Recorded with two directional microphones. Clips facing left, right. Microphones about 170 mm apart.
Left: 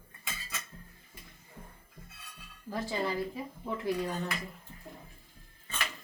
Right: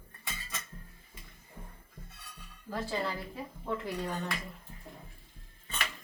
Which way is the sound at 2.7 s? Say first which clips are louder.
Left 1 dB; 15° left (ahead or behind).